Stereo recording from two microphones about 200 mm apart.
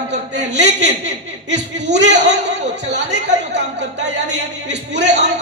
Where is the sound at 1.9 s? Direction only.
60° right (ahead or behind).